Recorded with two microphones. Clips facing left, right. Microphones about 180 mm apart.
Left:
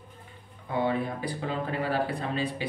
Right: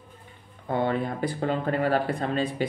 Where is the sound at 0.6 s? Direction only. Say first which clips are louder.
Right 2 dB; 55° right (ahead or behind).